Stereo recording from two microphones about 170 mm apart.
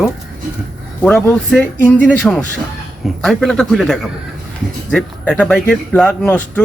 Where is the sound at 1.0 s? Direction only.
5° left (ahead or behind).